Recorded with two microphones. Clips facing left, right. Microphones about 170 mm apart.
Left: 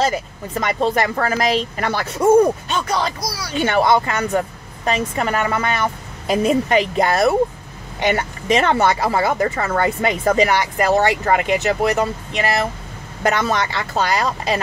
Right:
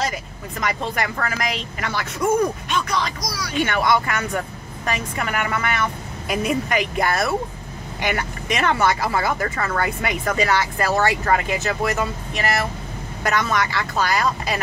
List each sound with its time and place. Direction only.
0.0 s speech: 30° left (ahead or behind)